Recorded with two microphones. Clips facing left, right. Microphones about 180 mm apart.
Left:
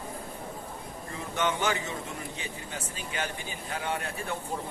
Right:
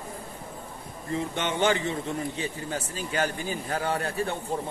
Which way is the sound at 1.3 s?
25° right (ahead or behind).